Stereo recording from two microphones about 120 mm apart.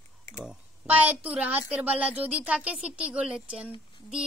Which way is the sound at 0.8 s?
15° right (ahead or behind).